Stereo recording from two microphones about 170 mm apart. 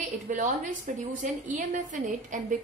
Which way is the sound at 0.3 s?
50° right (ahead or behind).